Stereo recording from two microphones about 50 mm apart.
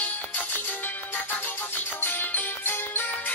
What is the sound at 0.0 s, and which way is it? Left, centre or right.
Music, left.